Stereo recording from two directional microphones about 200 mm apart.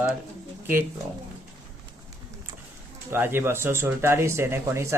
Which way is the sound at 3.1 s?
10° right (ahead or behind).